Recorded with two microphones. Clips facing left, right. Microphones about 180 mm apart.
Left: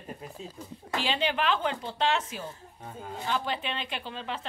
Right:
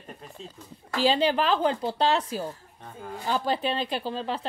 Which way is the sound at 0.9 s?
35° right (ahead or behind).